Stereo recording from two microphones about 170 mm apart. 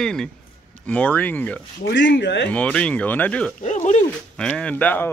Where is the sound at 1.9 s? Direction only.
90° left.